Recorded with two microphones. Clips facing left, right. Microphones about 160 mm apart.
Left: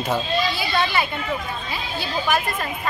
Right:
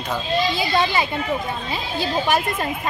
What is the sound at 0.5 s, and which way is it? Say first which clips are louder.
Speech: right 2 dB; 20° right (ahead or behind).